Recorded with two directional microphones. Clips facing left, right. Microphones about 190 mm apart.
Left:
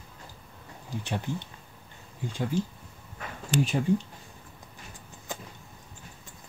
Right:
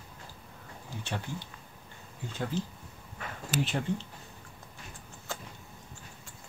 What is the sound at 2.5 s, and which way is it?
Speech, 10° left (ahead or behind).